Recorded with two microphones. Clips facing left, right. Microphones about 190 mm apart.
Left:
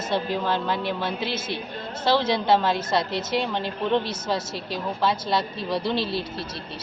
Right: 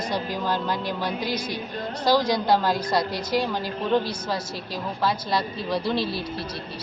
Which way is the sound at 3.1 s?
25° left (ahead or behind).